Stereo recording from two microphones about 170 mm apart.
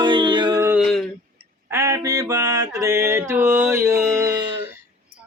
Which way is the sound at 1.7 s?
20° right (ahead or behind).